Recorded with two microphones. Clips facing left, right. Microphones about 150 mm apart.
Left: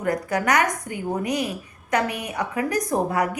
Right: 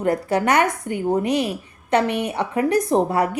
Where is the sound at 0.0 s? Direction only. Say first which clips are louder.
Right 4 dB; 25° right (ahead or behind).